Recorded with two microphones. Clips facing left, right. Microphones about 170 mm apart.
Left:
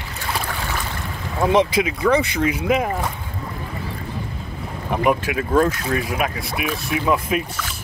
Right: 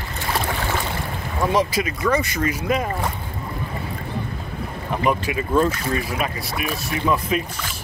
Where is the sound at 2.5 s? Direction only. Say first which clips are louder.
Left 3 dB; 10° left (ahead or behind).